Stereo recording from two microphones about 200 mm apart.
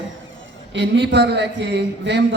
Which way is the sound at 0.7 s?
60° right (ahead or behind).